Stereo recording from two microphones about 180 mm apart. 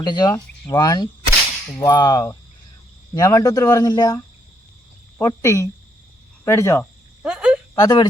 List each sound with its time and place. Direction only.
0.0 s speech: 25° left (ahead or behind)
7.2 s frog: 5° right (ahead or behind)
7.8 s speech: 25° left (ahead or behind)